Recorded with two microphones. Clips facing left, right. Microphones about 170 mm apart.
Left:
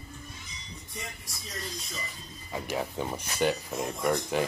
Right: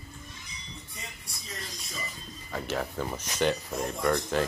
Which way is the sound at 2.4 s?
10° left (ahead or behind).